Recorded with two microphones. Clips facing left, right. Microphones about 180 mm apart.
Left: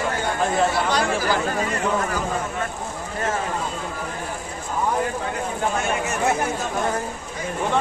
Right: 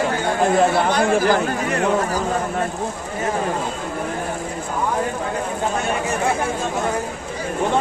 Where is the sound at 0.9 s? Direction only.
50° right (ahead or behind).